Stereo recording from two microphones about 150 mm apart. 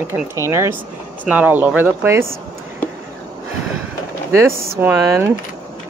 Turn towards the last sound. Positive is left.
turn(degrees=-15)  # may be behind; listen again after turning